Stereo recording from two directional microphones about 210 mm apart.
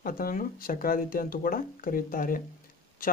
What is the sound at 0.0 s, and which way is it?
A man's voice, 40° left (ahead or behind).